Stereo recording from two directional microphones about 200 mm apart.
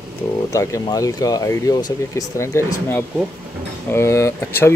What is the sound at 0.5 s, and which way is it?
Speech, 15° left (ahead or behind).